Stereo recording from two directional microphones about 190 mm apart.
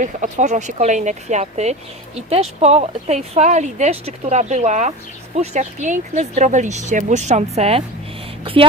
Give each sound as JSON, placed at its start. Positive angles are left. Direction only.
{"t": 0.0, "sound": "speech", "side_deg": -40}